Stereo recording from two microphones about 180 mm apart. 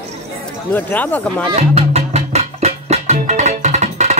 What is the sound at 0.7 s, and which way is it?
Speech, 10° left (ahead or behind).